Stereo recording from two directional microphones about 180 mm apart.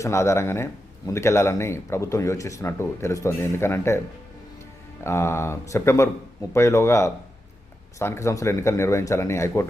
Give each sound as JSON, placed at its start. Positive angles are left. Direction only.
{"t": 0.0, "sound": "speech", "side_deg": 15}
{"t": 5.0, "sound": "speech", "side_deg": 15}